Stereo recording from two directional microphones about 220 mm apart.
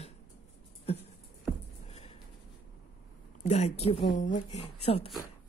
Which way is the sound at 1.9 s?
25° left (ahead or behind).